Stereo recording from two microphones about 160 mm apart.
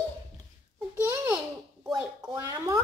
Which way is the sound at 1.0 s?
10° right (ahead or behind).